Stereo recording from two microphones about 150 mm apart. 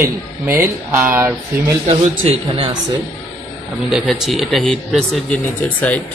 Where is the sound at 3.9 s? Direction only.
Centre (ahead or behind).